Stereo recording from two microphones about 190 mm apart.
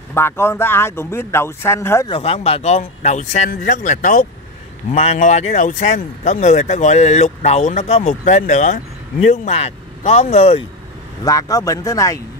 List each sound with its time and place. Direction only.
0.1 s speech: 15° left (ahead or behind)
2.0 s speech: 30° left (ahead or behind); by 4.3 s 45° left (ahead or behind)
4.9 s speech: 35° left (ahead or behind)
11.2 s speech: 15° left (ahead or behind)